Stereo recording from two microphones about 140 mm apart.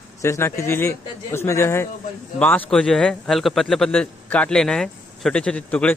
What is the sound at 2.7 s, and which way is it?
A man's voice, 5° left (ahead or behind).